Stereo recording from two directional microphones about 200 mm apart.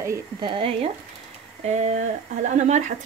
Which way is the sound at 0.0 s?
25° right (ahead or behind).